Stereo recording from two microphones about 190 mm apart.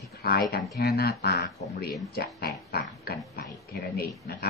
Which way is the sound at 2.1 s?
55° left (ahead or behind).